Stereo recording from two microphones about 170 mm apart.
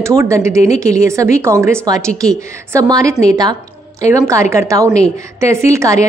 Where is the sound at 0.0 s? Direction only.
15° right (ahead or behind).